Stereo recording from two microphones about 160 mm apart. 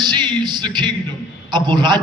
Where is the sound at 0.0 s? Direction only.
30° right (ahead or behind).